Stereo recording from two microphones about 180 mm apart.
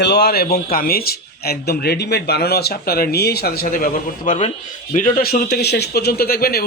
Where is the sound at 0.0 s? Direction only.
65° left (ahead or behind).